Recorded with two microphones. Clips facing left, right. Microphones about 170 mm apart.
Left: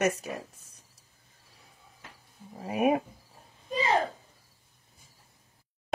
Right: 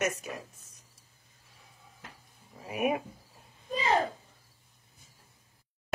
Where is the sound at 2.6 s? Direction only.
30° left (ahead or behind).